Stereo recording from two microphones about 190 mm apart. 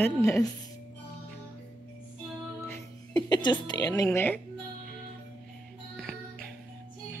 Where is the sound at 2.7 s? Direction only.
20° left (ahead or behind).